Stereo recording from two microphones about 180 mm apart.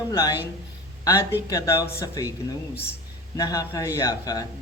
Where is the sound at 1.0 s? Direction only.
15° left (ahead or behind).